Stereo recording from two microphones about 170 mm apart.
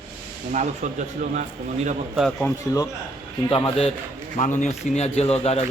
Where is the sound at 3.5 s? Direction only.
35° left (ahead or behind).